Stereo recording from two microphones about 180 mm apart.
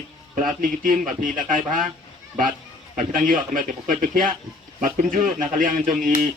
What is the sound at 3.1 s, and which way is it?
Speech, 50° right (ahead or behind).